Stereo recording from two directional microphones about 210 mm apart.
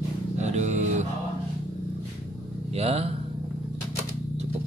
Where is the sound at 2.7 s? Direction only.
30° right (ahead or behind).